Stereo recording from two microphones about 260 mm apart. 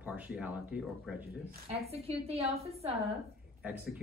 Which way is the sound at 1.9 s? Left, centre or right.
Right.